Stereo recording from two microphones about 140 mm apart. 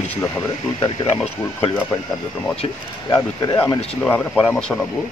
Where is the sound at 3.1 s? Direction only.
15° left (ahead or behind).